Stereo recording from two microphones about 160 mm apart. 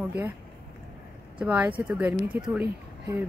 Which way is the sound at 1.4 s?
10° right (ahead or behind).